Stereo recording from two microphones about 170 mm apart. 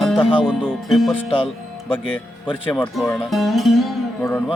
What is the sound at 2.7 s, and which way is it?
Music, centre (ahead or behind).